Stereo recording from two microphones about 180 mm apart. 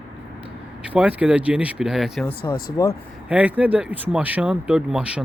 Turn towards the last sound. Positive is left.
turn(degrees=-5)  # may be behind; listen again after turning